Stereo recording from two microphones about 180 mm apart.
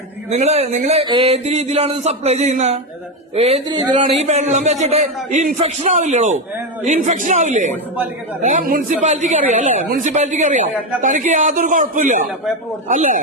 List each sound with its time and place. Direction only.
0.3 s speech: 35° right (ahead or behind)
3.7 s a man's voice: 25° right (ahead or behind)
4.0 s speech: 35° right (ahead or behind)